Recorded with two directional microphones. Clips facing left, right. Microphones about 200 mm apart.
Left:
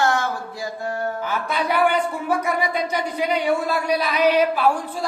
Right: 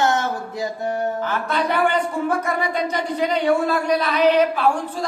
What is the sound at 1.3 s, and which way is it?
Speech, 10° left (ahead or behind).